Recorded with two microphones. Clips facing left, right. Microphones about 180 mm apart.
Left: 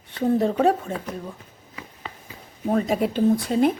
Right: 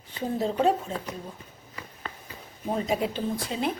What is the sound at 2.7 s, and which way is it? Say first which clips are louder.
Speech: left 6 dB; 45° left (ahead or behind).